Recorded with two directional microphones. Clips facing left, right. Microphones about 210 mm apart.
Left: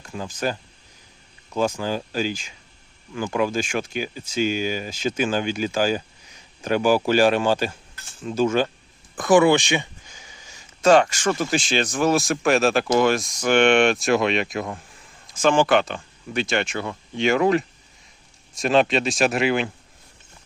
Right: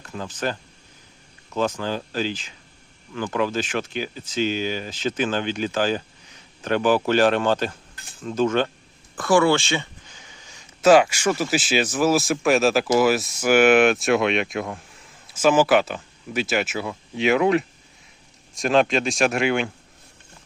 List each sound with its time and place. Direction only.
0.0 s speech: 10° left (ahead or behind)
10.8 s speech: 5° right (ahead or behind)